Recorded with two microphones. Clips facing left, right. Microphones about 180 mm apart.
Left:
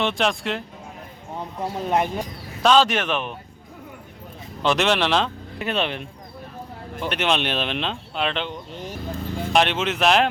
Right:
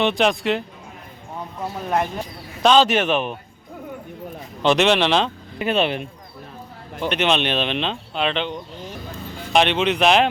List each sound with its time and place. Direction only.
0.0 s speech: centre (ahead or behind)
1.7 s speech: 20° left (ahead or behind)
2.6 s speech: centre (ahead or behind)
2.9 s speech: 30° right (ahead or behind)
4.6 s speech: centre (ahead or behind)
7.0 s speech: 5° left (ahead or behind)